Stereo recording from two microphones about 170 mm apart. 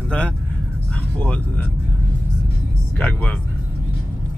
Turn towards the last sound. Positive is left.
turn(degrees=5)  # may be behind; listen again after turning